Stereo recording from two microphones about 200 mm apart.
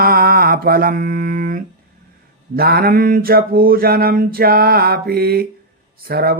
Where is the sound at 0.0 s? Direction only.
50° right (ahead or behind).